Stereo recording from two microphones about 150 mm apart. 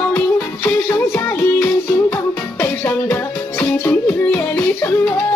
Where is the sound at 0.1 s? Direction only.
15° left (ahead or behind).